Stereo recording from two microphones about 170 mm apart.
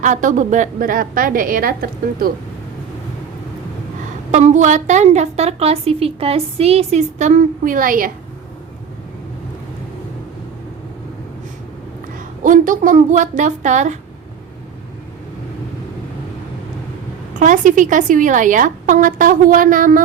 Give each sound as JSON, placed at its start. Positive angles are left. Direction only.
{"t": 0.0, "sound": "a woman's voice", "side_deg": -45}
{"t": 4.3, "sound": "a woman's voice", "side_deg": -45}
{"t": 12.4, "sound": "a woman's voice", "side_deg": -50}
{"t": 17.4, "sound": "a woman's voice", "side_deg": -50}